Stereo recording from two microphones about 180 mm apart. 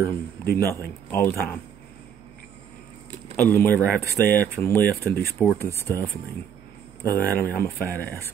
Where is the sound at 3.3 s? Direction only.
10° left (ahead or behind).